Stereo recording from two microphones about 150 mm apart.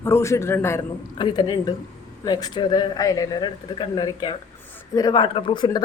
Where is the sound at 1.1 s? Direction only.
30° left (ahead or behind).